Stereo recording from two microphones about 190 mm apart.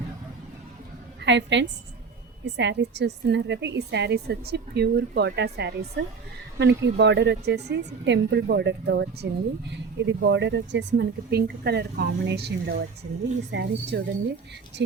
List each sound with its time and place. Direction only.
1.2 s a woman's voice: 70° right (ahead or behind)